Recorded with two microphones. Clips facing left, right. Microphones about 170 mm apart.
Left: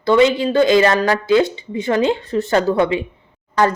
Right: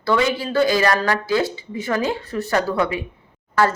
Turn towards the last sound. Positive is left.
turn(degrees=15)  # may be behind; listen again after turning